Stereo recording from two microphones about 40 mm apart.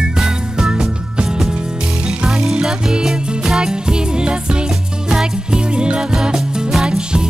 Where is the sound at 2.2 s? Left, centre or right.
Centre.